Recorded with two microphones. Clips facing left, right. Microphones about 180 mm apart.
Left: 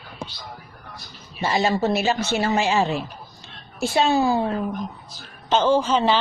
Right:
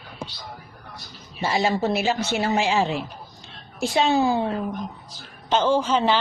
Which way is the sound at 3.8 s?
20° right (ahead or behind).